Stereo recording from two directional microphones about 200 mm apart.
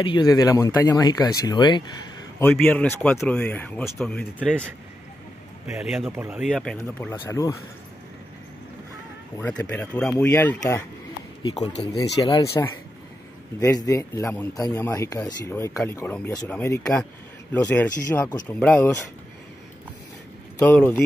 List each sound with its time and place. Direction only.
0.0 s speech: 20° left (ahead or behind)
2.4 s a man's voice: 5° left (ahead or behind)
5.7 s speech: centre (ahead or behind)
6.8 s a man's voice: 15° left (ahead or behind)
9.4 s a man's voice: 5° left (ahead or behind)
12.0 s speech: 20° left (ahead or behind)
13.6 s a man's voice: 15° left (ahead or behind)
20.5 s speech: 10° left (ahead or behind)